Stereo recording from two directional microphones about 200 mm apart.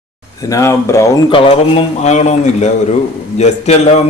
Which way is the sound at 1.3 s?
25° left (ahead or behind).